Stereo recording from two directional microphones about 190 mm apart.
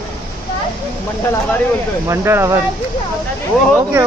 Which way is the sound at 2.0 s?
15° right (ahead or behind).